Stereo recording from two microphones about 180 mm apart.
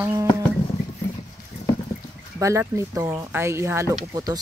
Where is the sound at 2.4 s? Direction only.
15° right (ahead or behind).